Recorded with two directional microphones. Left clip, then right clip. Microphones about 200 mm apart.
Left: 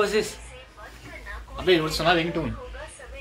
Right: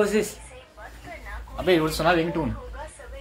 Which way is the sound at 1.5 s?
50° right (ahead or behind).